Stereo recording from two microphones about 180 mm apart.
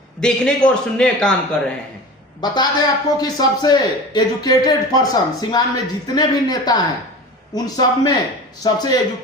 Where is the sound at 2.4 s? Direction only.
25° left (ahead or behind).